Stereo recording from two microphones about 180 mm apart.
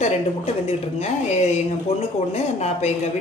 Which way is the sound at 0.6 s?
35° left (ahead or behind).